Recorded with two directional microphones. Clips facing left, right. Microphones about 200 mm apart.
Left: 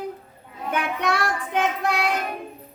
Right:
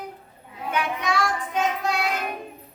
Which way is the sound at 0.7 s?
60° left (ahead or behind).